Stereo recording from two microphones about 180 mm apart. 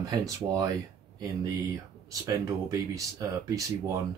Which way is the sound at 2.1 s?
20° right (ahead or behind).